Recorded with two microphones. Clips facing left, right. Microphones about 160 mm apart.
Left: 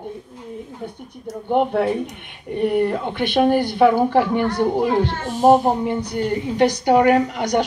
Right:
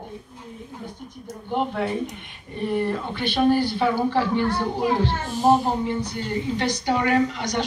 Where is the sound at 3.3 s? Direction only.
55° left (ahead or behind).